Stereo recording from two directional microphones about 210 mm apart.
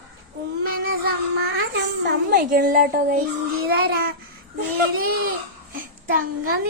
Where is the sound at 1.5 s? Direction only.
50° right (ahead or behind).